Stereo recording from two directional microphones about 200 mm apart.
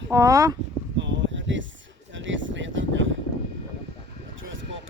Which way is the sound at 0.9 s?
65° right (ahead or behind).